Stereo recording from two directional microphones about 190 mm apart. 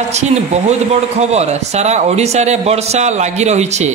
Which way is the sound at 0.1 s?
35° right (ahead or behind).